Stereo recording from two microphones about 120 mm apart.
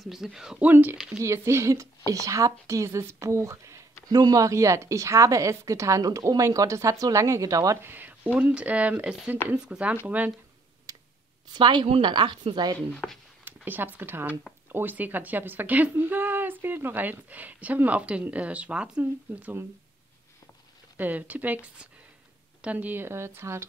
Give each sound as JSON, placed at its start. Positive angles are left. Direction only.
{"t": 0.0, "sound": "speech", "side_deg": -5}
{"t": 0.9, "sound": "speech", "side_deg": -5}
{"t": 1.2, "sound": "a woman's voice", "side_deg": -25}
{"t": 10.9, "sound": "a sound", "side_deg": -30}
{"t": 11.5, "sound": "a woman's voice", "side_deg": -40}
{"t": 12.7, "sound": "speech", "side_deg": 5}
{"t": 13.7, "sound": "speech", "side_deg": -15}
{"t": 21.0, "sound": "a woman's voice", "side_deg": -15}